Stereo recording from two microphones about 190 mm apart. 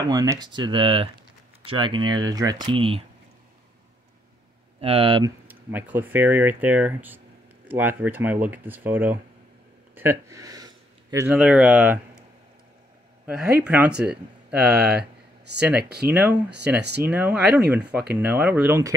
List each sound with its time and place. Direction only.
0.1 s speech: 20° right (ahead or behind)
4.7 s speech: 30° right (ahead or behind)
5.5 s speech: 10° right (ahead or behind)
9.9 s a sound: 15° right (ahead or behind)
11.2 s speech: 5° right (ahead or behind)
13.3 s speech: 5° right (ahead or behind)
15.0 s a sound: 60° right (ahead or behind)
15.8 s speech: 55° right (ahead or behind)
16.1 s speech: 5° right (ahead or behind)
16.4 s speech: 60° right (ahead or behind)
17.0 s speech: 10° right (ahead or behind)